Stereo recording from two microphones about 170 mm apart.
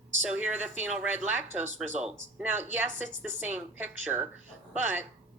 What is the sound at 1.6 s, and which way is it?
Speech, 40° right (ahead or behind).